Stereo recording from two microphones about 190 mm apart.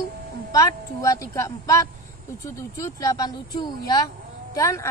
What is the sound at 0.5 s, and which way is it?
A woman's voice, 20° left (ahead or behind).